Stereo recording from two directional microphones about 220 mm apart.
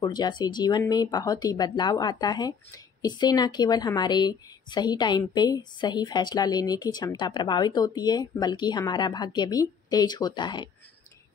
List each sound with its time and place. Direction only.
0.0 s speech: 20° left (ahead or behind)